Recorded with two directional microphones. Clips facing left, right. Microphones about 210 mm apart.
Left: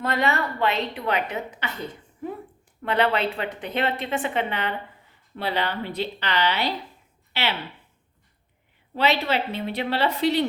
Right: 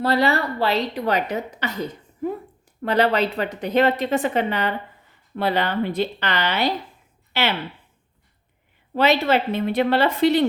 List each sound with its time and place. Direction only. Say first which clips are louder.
0.0 s a woman's voice: right 5 dB; 35° right (ahead or behind)
2.8 s a woman's voice: right 3 dB; 40° right (ahead or behind)
9.0 s a woman's voice: right 5 dB; 50° right (ahead or behind)